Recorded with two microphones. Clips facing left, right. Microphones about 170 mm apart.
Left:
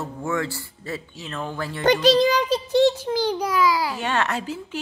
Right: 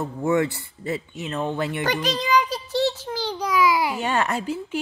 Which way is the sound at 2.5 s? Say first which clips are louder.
Left 6 dB; 15° left (ahead or behind).